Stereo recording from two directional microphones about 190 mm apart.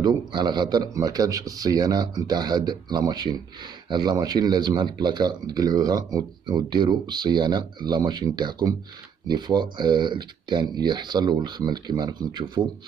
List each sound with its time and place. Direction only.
0.0 s speech: 25° right (ahead or behind)